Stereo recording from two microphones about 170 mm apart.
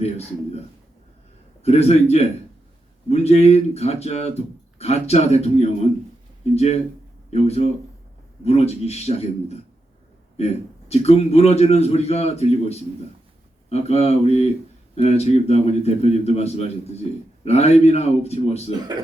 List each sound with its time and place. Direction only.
1.6 s speech: 40° left (ahead or behind)